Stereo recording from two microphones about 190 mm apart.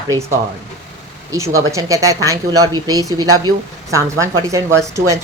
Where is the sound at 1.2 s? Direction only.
15° right (ahead or behind).